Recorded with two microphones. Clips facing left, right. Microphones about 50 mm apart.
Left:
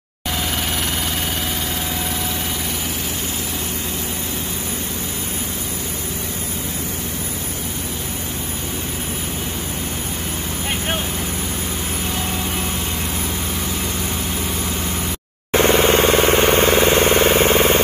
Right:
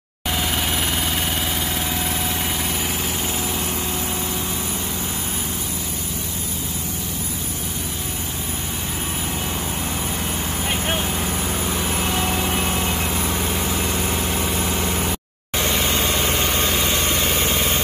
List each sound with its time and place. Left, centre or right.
12.0 s vehicle: right
15.5 s vehicle: left